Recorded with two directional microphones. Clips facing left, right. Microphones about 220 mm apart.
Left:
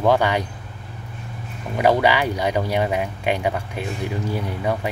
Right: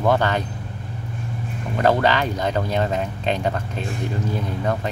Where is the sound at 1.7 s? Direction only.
10° left (ahead or behind).